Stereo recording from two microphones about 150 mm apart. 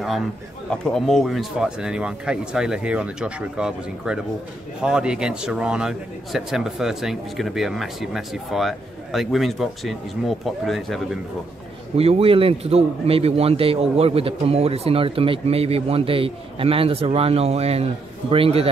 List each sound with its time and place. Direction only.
0.8 s a man's voice: centre (ahead or behind)
12.0 s a man's voice: 40° right (ahead or behind)